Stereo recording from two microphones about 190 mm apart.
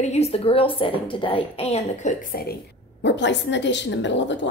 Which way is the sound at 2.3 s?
55° left (ahead or behind).